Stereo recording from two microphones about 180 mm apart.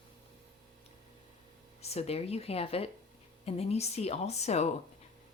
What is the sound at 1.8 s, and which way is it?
Speech, 35° left (ahead or behind).